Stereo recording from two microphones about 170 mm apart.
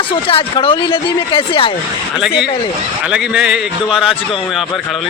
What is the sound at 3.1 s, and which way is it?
A man's voice, 5° right (ahead or behind).